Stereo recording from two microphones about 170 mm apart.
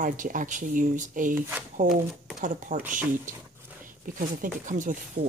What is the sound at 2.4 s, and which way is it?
Speech, 45° right (ahead or behind).